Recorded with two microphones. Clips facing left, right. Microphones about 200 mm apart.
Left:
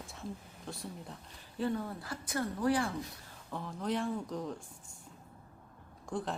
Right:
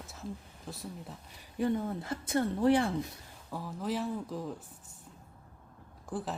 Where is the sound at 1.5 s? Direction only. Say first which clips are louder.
Right 4 dB; 20° right (ahead or behind).